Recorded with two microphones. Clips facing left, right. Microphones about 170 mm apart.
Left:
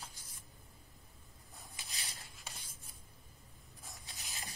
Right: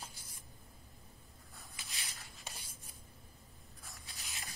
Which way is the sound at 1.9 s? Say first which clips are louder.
Even; 35° left (ahead or behind).